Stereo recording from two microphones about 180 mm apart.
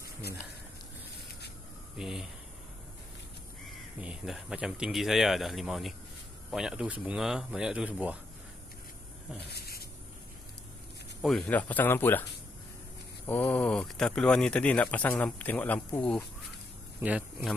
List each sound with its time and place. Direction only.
2.0 s speech: centre (ahead or behind)
4.0 s speech: 5° right (ahead or behind)
9.5 s a sound: 60° left (ahead or behind)
11.1 s speech: centre (ahead or behind)
13.3 s speech: 10° left (ahead or behind)
17.0 s speech: 5° right (ahead or behind)